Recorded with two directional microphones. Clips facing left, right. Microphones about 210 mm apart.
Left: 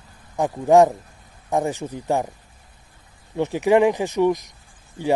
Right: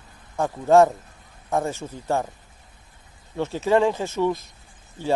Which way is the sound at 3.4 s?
15° left (ahead or behind).